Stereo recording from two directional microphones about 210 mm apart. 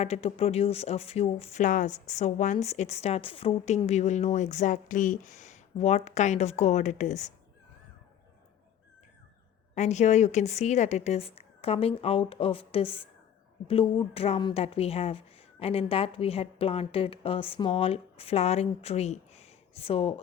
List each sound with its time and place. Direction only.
0.0 s speech: 30° left (ahead or behind)
9.7 s a woman's voice: 35° left (ahead or behind)